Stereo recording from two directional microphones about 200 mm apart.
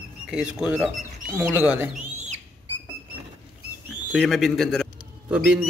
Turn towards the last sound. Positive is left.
turn(degrees=-5)  # may be behind; listen again after turning